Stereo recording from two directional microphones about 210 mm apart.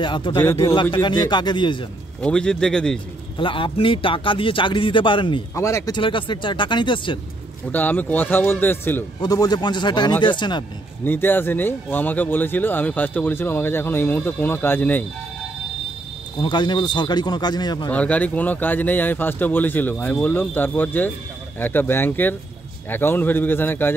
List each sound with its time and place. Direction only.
0.0 s speech: 20° left (ahead or behind)
2.2 s a man's voice: 5° left (ahead or behind)
3.3 s speech: 25° left (ahead or behind)
7.7 s speech: 10° left (ahead or behind)
11.1 s speech: 10° left (ahead or behind)
16.3 s speech: 20° left (ahead or behind)
17.8 s speech: 5° left (ahead or behind)